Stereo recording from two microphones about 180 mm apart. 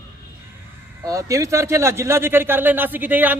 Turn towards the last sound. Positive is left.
turn(degrees=-10)  # may be behind; listen again after turning